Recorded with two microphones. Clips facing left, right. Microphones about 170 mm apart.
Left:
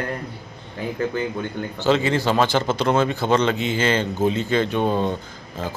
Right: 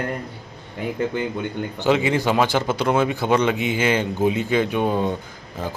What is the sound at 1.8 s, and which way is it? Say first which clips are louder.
A man's voice: even; 15° right (ahead or behind).